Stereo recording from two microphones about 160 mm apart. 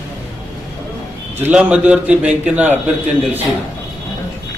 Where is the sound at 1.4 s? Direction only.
10° right (ahead or behind).